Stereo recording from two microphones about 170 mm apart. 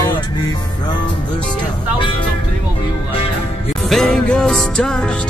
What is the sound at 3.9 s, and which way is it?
Music, centre (ahead or behind).